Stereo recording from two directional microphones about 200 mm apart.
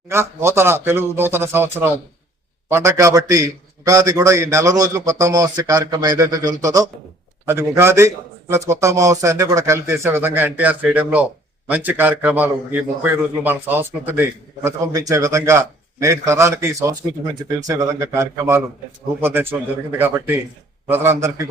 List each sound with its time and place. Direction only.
0.1 s a man's voice: 15° right (ahead or behind)